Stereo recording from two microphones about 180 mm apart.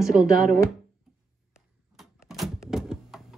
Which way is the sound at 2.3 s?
Centre (ahead or behind).